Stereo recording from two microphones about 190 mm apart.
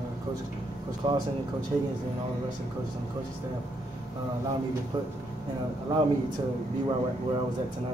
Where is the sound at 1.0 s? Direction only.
20° right (ahead or behind).